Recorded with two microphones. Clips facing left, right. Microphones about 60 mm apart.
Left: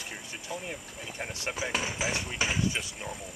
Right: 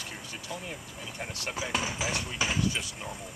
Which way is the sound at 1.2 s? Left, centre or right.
Left.